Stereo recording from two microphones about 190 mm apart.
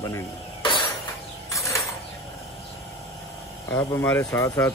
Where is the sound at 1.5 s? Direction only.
15° left (ahead or behind).